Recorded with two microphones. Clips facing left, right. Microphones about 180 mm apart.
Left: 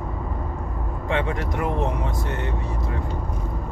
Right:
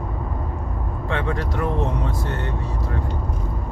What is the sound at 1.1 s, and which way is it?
Speech, 20° left (ahead or behind).